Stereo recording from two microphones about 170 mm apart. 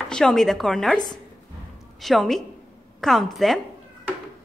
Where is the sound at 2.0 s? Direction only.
Centre (ahead or behind).